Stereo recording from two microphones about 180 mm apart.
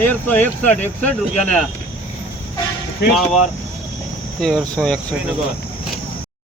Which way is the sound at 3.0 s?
65° left (ahead or behind).